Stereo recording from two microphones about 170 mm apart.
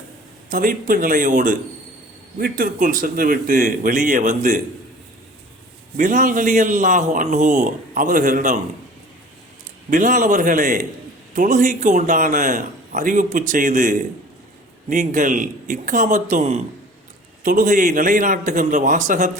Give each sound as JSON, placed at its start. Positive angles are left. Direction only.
{"t": 0.5, "sound": "a man's voice", "side_deg": -55}
{"t": 6.0, "sound": "a man's voice", "side_deg": -50}
{"t": 9.9, "sound": "a man's voice", "side_deg": -50}
{"t": 17.4, "sound": "a man's voice", "side_deg": -55}